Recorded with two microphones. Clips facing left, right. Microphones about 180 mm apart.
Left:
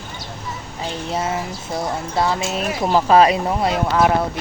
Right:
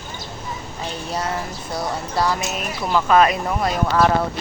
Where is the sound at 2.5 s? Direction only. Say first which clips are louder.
Left 4 dB; 35° left (ahead or behind).